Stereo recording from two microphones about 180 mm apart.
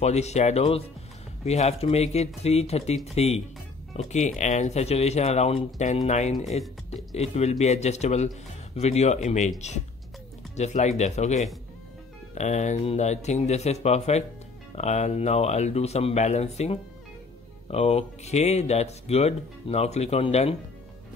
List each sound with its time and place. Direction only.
0.0 s speech: 40° left (ahead or behind)
10.5 s speech: 40° left (ahead or behind)